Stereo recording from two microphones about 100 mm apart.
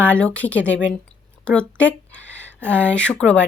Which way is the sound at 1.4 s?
10° left (ahead or behind).